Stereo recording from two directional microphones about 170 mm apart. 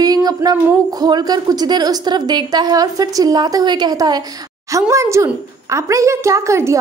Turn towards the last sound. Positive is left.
turn(degrees=-15)  # may be behind; listen again after turning